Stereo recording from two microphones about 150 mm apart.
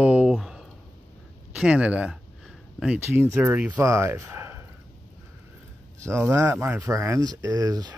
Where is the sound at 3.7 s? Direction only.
20° right (ahead or behind).